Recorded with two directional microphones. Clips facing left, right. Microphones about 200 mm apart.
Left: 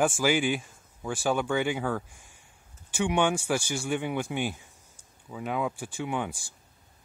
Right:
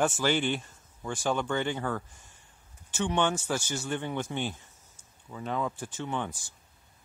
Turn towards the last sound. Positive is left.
turn(degrees=10)  # may be behind; listen again after turning